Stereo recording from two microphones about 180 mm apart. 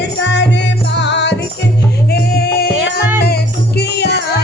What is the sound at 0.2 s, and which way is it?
Music, 75° left (ahead or behind).